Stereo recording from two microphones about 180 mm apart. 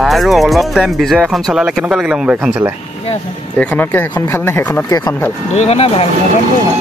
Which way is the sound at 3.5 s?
10° left (ahead or behind).